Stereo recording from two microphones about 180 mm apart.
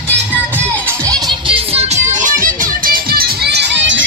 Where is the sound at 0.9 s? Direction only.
20° right (ahead or behind); by 4.0 s 85° right.